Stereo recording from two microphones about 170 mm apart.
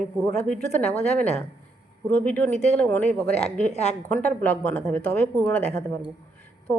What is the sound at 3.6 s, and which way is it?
Speech, 40° left (ahead or behind).